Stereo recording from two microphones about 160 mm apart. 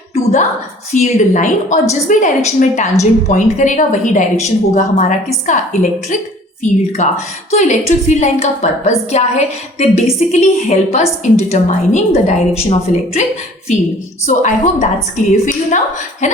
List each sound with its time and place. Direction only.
0.1 s a sound: 45° left (ahead or behind)
0.9 s a woman's voice: 50° left (ahead or behind)
6.6 s a woman's voice: 45° left (ahead or behind)
14.3 s a woman's voice: 50° left (ahead or behind)